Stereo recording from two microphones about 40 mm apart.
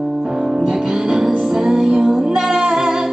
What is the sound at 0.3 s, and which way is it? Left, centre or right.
Music, centre.